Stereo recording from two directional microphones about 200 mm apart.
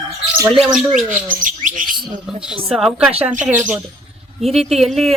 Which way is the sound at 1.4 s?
40° right (ahead or behind).